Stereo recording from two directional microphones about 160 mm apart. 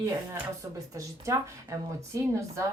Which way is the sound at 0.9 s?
20° right (ahead or behind).